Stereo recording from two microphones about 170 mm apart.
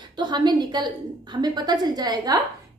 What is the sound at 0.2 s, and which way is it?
A woman's voice, 25° right (ahead or behind).